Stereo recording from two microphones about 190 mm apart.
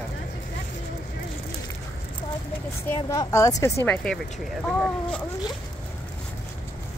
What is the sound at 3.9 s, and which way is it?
Speech, 5° left (ahead or behind).